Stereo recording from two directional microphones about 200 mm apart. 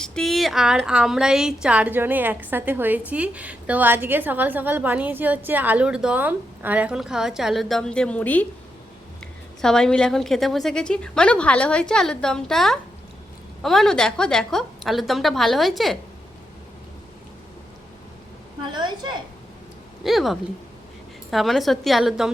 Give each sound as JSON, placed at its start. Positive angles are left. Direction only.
{"t": 0.0, "sound": "a woman's voice", "side_deg": 5}
{"t": 9.6, "sound": "a woman's voice", "side_deg": 5}
{"t": 18.7, "sound": "a woman's voice", "side_deg": -20}
{"t": 20.1, "sound": "a woman's voice", "side_deg": 0}